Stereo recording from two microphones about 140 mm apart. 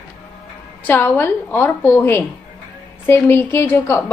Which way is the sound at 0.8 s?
15° left (ahead or behind).